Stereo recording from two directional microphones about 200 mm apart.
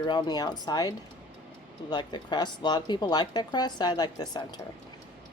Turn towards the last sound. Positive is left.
turn(degrees=20)  # may be behind; listen again after turning